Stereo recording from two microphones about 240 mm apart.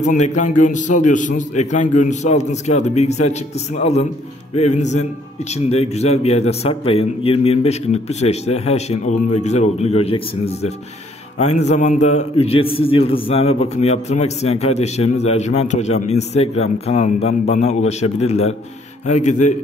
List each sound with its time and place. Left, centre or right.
0.0 s a man's voice: left